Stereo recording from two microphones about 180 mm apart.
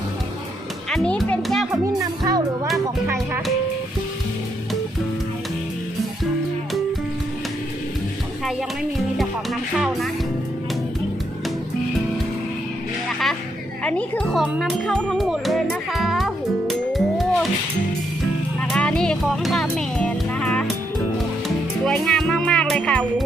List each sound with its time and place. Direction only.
0.9 s music: 5° left (ahead or behind)
1.7 s music: 20° right (ahead or behind)
9.1 s music: centre (ahead or behind)
13.1 s music: centre (ahead or behind)
18.7 s music: 5° left (ahead or behind)